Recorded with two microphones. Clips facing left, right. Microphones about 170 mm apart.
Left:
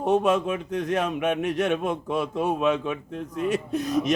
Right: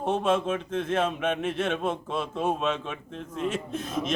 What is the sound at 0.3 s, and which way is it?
Speech, 15° left (ahead or behind).